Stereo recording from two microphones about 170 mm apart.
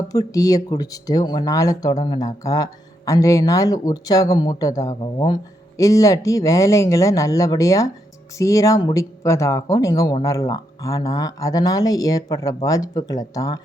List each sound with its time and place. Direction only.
0.1 s speech: 20° left (ahead or behind)